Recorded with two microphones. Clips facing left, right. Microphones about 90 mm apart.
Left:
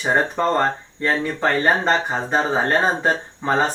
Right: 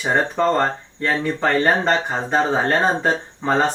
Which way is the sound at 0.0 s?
5° left (ahead or behind).